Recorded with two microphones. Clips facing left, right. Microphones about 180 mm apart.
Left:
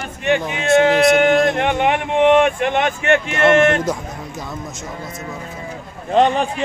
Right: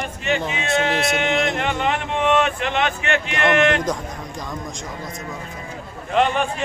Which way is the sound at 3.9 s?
5° left (ahead or behind).